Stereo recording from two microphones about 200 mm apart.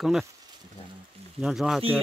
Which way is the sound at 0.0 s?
Centre (ahead or behind).